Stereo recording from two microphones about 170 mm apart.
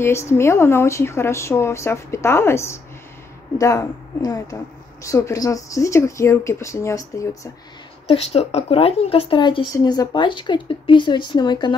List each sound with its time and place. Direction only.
0.0 s speech: 15° left (ahead or behind)
8.1 s speech: 35° left (ahead or behind)